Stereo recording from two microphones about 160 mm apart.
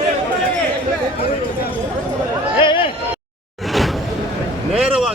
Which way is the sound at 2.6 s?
30° left (ahead or behind).